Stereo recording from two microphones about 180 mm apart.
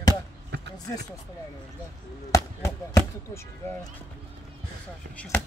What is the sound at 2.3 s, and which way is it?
Speech, 15° left (ahead or behind).